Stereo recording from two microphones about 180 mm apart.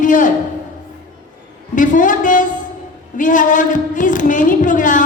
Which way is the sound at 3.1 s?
45° left (ahead or behind).